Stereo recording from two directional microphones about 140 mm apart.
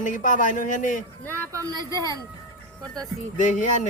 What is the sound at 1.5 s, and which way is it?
Speech, 25° right (ahead or behind).